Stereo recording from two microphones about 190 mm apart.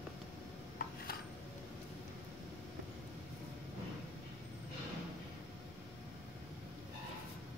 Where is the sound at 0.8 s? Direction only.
50° left (ahead or behind).